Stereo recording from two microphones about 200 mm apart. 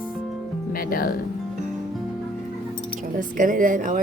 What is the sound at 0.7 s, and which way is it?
Music, 45° left (ahead or behind).